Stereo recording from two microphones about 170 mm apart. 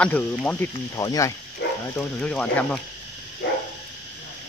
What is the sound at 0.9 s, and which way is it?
Speech, 20° left (ahead or behind).